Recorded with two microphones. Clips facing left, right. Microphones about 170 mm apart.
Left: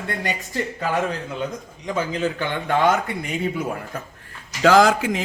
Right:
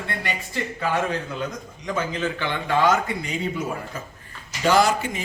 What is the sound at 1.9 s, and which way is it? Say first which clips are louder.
Speech: left 3 dB; 40° left (ahead or behind).